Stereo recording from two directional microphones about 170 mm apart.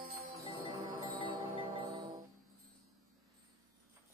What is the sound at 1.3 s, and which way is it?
Music, 30° right (ahead or behind).